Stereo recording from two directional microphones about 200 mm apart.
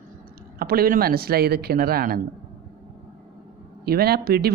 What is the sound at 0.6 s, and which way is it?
Speech, 45° right (ahead or behind).